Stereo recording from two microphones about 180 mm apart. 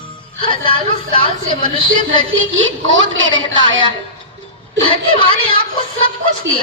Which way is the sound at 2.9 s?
90° right.